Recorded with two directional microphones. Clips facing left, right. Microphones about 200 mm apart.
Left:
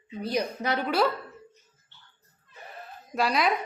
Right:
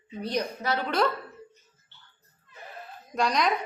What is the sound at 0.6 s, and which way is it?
Speech, 20° left (ahead or behind).